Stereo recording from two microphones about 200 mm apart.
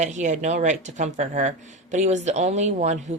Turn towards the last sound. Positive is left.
turn(degrees=-35)  # may be behind; listen again after turning